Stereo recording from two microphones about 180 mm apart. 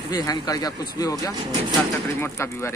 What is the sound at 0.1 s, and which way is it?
Speech, 20° left (ahead or behind).